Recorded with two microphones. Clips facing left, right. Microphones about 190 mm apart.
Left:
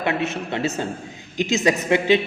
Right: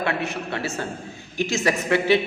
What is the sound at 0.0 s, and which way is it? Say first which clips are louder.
A man's voice: left 2 dB; 20° left (ahead or behind).